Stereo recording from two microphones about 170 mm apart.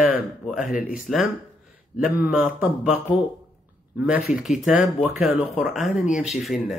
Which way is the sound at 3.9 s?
5° right (ahead or behind).